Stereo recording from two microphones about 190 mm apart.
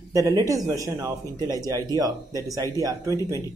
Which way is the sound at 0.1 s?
20° right (ahead or behind).